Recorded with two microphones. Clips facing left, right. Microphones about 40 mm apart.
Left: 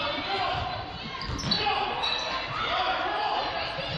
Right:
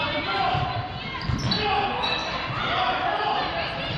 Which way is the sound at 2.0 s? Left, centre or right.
Centre.